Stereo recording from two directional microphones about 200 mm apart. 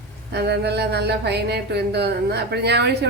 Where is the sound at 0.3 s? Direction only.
55° right (ahead or behind).